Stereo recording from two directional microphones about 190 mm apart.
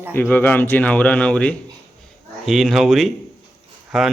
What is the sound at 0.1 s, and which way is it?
Speech, 10° left (ahead or behind).